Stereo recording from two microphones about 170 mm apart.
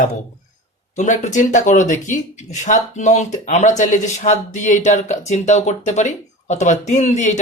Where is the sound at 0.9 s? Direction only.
45° left (ahead or behind).